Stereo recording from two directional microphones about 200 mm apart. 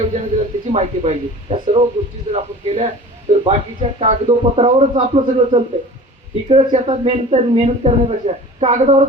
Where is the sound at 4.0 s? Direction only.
30° right (ahead or behind).